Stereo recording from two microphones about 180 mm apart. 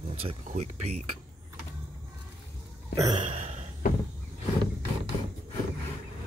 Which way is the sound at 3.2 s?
40° right (ahead or behind).